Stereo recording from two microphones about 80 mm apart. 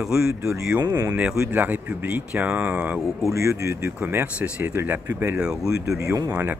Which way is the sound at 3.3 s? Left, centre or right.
Right.